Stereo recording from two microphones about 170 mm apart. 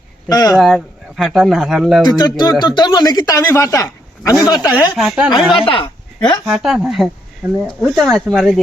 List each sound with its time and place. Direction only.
0.3 s speech: 20° left (ahead or behind)
0.5 s speech: centre (ahead or behind)
2.0 s speech: 25° left (ahead or behind)
4.7 s speech: centre (ahead or behind)
5.5 s speech: 30° left (ahead or behind)
6.4 s speech: centre (ahead or behind)